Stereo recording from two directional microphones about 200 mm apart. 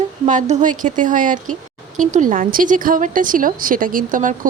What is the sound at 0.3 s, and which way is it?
A woman's voice, 35° right (ahead or behind).